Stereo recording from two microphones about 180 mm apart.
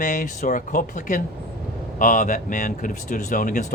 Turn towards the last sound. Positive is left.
turn(degrees=45)  # may be behind; listen again after turning